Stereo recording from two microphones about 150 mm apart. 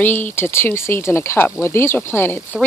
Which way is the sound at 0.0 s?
10° left (ahead or behind).